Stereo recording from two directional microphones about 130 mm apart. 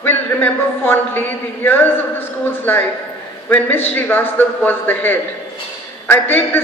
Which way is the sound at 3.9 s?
15° left (ahead or behind).